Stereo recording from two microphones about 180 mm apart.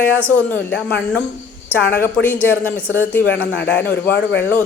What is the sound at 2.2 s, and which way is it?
Speech, 10° left (ahead or behind).